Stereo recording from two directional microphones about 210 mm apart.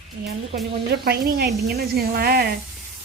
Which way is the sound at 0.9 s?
50° right (ahead or behind).